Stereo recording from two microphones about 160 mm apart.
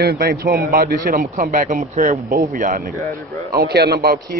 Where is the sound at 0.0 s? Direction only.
75° right (ahead or behind).